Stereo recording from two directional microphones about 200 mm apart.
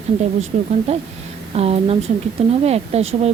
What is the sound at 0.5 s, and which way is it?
A woman's voice, 35° right (ahead or behind).